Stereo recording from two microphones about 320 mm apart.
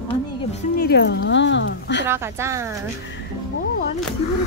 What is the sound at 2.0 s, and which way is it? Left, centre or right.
Speech, centre.